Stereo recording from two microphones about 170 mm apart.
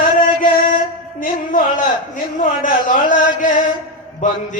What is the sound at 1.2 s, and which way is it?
Music, 55° left (ahead or behind).